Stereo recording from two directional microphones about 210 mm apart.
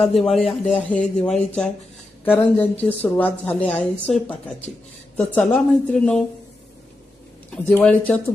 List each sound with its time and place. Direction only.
0.2 s a woman's voice: centre (ahead or behind)
0.4 s speech: 30° left (ahead or behind)
0.8 s a woman's voice: 5° left (ahead or behind)
7.5 s a woman's voice: 5° left (ahead or behind)